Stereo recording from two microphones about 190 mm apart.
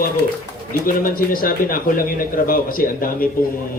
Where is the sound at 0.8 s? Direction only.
50° left (ahead or behind).